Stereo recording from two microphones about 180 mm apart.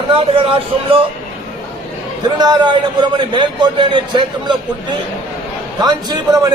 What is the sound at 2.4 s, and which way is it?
A man's voice, 25° right (ahead or behind).